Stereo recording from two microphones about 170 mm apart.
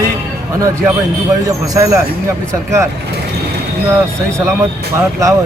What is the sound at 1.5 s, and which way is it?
Speech, 20° right (ahead or behind).